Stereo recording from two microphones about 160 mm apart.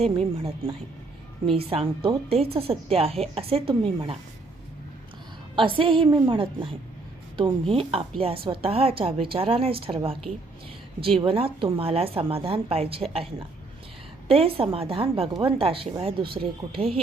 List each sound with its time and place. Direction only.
0.0 s speech: 40° right (ahead or behind)
5.5 s speech: 35° right (ahead or behind)
11.2 s speech: 35° right (ahead or behind)
14.3 s speech: 35° right (ahead or behind)